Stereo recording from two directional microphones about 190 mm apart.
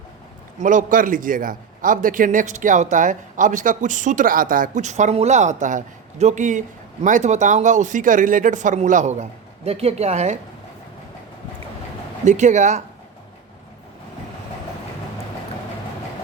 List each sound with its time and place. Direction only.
0.6 s a man's voice: 45° right (ahead or behind)
12.2 s a man's voice: 40° right (ahead or behind)